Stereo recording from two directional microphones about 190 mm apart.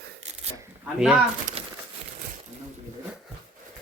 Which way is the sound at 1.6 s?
30° right (ahead or behind).